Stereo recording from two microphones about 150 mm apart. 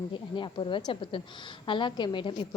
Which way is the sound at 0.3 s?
30° left (ahead or behind).